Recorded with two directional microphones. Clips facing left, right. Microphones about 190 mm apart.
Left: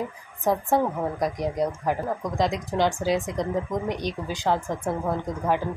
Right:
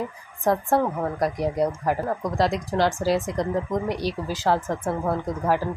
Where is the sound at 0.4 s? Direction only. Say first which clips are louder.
Right 1 dB; centre (ahead or behind).